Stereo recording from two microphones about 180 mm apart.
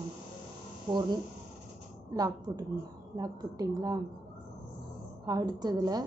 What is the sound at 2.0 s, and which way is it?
A woman's voice, 20° right (ahead or behind).